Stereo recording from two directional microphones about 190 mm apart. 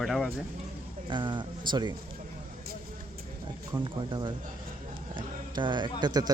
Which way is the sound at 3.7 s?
25° right (ahead or behind).